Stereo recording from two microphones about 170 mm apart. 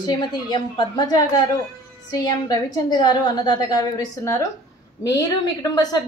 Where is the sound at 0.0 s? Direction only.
25° left (ahead or behind).